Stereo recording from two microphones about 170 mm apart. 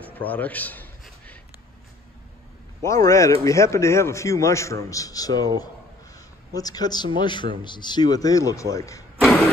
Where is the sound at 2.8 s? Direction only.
20° left (ahead or behind).